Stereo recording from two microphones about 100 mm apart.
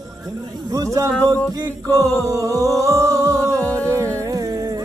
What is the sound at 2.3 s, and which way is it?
Music, 35° right (ahead or behind).